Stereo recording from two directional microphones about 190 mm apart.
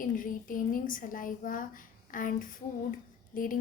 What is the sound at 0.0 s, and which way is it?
A woman's voice, 45° left (ahead or behind).